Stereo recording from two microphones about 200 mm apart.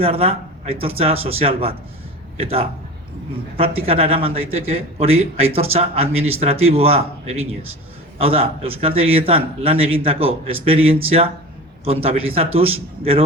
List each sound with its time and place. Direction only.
0.0 s a man's voice: 30° right (ahead or behind)